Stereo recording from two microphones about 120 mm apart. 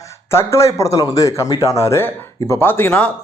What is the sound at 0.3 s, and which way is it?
A man's voice, 20° left (ahead or behind).